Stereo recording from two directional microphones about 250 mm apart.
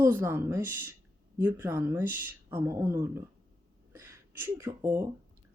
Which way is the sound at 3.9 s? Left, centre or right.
Centre.